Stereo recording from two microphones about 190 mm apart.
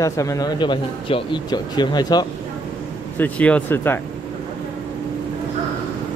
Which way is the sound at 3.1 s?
10° left (ahead or behind).